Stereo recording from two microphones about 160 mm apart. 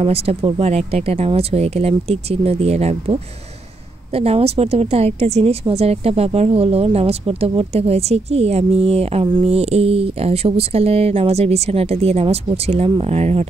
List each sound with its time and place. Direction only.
0.0 s a woman's voice: 40° right (ahead or behind)